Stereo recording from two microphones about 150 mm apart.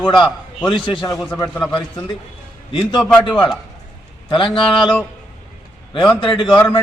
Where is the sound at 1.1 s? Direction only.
Centre (ahead or behind).